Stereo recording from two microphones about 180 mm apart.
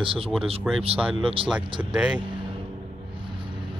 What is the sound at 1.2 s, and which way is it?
Speech, 30° right (ahead or behind).